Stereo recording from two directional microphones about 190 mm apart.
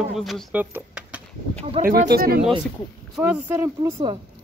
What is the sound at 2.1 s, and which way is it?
Speech, 50° right (ahead or behind).